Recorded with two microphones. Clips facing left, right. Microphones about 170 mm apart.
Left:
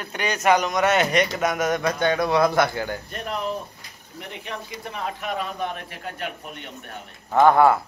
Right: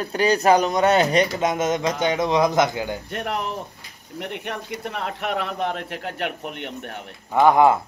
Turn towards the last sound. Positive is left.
turn(degrees=-15)  # may be behind; listen again after turning